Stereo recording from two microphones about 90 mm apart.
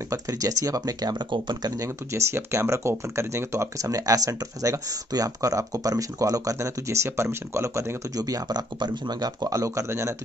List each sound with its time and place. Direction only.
0.1 s speech: 40° right (ahead or behind); by 1.7 s 55° right (ahead or behind)
1.8 s speech: 30° right (ahead or behind)
8.2 s speech: 45° right (ahead or behind)